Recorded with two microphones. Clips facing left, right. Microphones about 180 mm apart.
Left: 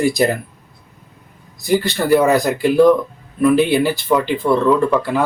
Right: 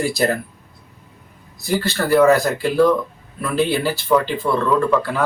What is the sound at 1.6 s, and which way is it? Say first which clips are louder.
Speech: left 4 dB; 15° left (ahead or behind).